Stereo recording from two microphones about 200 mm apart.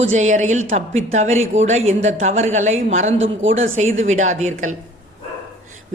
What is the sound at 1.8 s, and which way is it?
Speech, 80° right.